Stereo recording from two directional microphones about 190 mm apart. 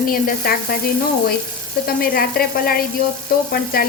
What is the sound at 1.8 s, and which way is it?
Frying, 50° left (ahead or behind).